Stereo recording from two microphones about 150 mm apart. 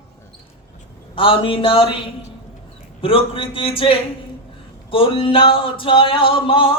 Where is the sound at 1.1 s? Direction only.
35° left (ahead or behind).